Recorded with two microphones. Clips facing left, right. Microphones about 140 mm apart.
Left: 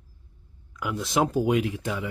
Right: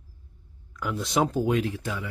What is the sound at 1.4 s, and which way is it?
Speech, 15° left (ahead or behind).